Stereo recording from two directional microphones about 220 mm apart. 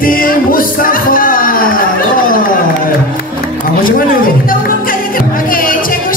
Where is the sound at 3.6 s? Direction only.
40° left (ahead or behind).